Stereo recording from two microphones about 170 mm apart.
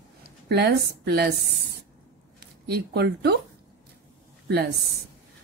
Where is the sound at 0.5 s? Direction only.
75° right (ahead or behind).